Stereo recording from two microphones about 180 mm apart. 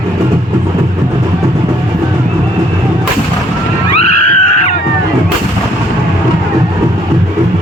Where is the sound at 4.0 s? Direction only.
35° left (ahead or behind).